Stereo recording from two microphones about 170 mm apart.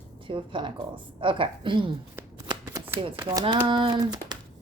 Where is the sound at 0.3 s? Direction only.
30° right (ahead or behind).